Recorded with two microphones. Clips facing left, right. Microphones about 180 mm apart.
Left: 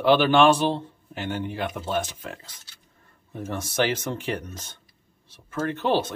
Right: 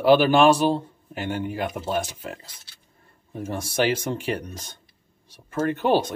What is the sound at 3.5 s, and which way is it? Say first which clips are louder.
Speech: right 2 dB; 10° right (ahead or behind).